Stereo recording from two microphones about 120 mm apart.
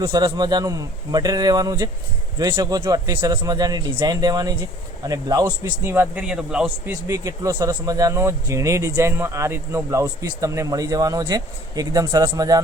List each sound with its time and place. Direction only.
0.0 s a man's voice: 40° right (ahead or behind)
5.8 s a man's voice: 20° right (ahead or behind)
6.2 s a man's voice: 10° right (ahead or behind); by 12.6 s 30° right (ahead or behind)